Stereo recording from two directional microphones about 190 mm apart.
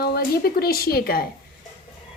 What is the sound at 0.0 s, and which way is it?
A woman's voice, 55° left (ahead or behind).